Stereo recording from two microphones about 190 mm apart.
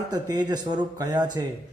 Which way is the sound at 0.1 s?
20° right (ahead or behind).